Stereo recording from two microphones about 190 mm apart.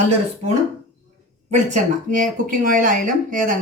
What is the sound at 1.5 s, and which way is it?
Speech, 40° right (ahead or behind).